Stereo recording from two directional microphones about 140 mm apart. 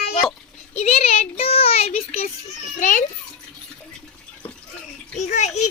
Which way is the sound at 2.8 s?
65° left (ahead or behind).